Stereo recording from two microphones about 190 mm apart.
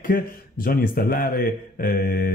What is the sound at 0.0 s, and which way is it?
A man's voice, 50° left (ahead or behind).